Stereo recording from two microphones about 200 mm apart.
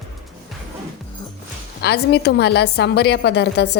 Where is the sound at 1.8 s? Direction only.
55° left (ahead or behind).